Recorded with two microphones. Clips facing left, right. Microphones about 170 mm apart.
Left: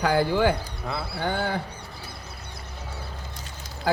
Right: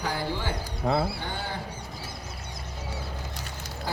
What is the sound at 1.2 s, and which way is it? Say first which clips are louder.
Speech: left 8 dB; 70° left (ahead or behind).